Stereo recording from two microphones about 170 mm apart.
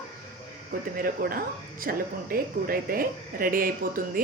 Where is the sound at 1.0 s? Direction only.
60° right (ahead or behind).